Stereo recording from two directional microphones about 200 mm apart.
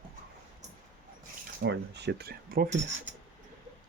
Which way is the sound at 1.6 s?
60° right (ahead or behind).